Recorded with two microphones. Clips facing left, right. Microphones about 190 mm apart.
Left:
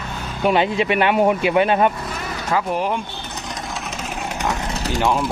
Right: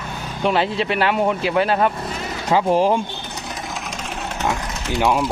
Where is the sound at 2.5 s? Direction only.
30° right (ahead or behind).